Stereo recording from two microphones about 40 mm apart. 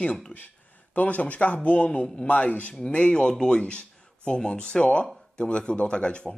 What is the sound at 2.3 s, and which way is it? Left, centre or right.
Speech, left.